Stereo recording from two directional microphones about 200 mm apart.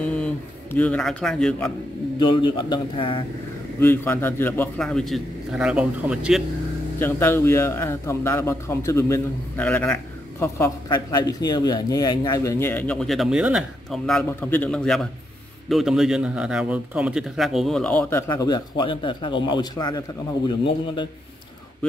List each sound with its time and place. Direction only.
0.1 s a sound: 5° left (ahead or behind)
2.1 s a man's voice: 25° left (ahead or behind)
3.8 s speech: 10° left (ahead or behind); by 6.4 s 5° right (ahead or behind)
7.0 s a man's voice: 10° left (ahead or behind)